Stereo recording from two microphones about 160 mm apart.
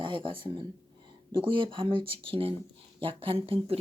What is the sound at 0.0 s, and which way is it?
Speech, 30° right (ahead or behind).